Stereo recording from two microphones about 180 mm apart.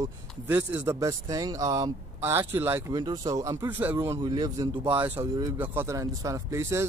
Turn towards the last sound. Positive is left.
turn(degrees=-15)  # may be behind; listen again after turning